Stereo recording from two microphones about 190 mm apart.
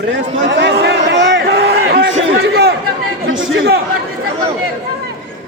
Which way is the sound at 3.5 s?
70° right (ahead or behind).